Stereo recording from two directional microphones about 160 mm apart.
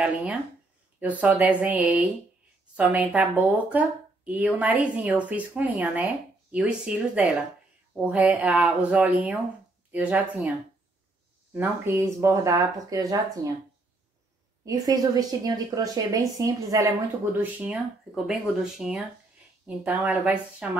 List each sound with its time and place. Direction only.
0.0 s speech: 10° right (ahead or behind)
11.5 s speech: 15° right (ahead or behind)
14.6 s speech: 25° right (ahead or behind)